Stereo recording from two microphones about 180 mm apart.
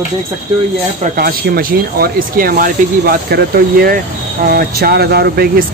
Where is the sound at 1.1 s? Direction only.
60° right (ahead or behind).